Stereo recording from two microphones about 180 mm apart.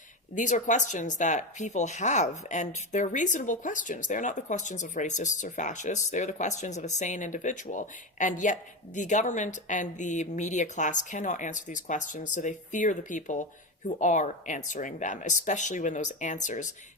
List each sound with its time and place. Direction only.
0.3 s speech: 45° left (ahead or behind)